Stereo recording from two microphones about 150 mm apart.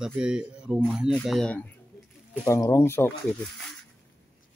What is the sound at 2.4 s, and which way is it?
Speech, 20° left (ahead or behind).